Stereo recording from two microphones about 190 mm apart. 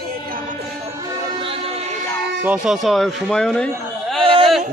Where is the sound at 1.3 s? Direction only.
30° right (ahead or behind).